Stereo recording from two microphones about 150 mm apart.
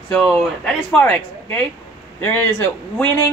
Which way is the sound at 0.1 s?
5° left (ahead or behind).